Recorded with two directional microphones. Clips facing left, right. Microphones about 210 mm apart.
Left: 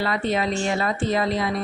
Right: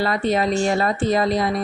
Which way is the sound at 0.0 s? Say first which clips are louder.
Right 3 dB; 40° right (ahead or behind).